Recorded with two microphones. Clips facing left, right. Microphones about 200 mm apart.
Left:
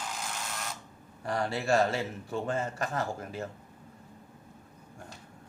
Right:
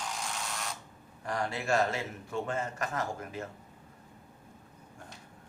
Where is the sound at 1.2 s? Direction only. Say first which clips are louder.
Left 3 dB; 35° left (ahead or behind).